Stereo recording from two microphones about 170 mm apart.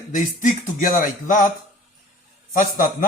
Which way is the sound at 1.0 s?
50° left (ahead or behind).